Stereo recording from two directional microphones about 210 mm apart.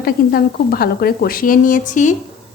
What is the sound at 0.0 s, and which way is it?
A woman's voice, 45° left (ahead or behind).